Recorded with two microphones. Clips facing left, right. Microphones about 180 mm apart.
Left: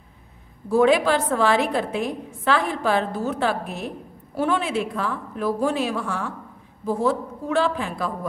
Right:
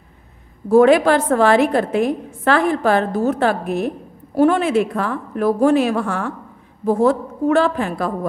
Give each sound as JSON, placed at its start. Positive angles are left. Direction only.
{"t": 0.7, "sound": "a woman's voice", "side_deg": -55}